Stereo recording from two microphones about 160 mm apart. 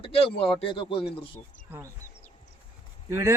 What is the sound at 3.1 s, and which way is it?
Speech, 15° right (ahead or behind).